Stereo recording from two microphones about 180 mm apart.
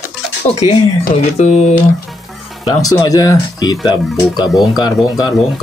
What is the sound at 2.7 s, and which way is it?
Speech, 20° left (ahead or behind).